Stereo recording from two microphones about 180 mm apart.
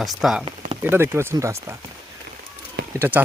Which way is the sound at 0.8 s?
15° right (ahead or behind).